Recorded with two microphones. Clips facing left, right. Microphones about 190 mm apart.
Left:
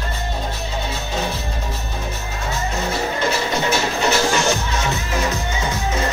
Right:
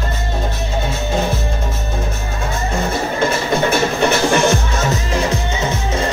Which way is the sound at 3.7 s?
55° right (ahead or behind).